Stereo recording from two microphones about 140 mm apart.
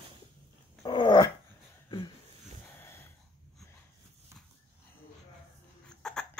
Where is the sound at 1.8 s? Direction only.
35° left (ahead or behind).